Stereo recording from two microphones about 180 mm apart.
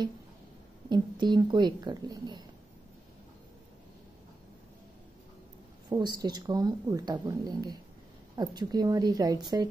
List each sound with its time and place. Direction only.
0.8 s speech: 25° right (ahead or behind)
5.9 s speech: 25° right (ahead or behind)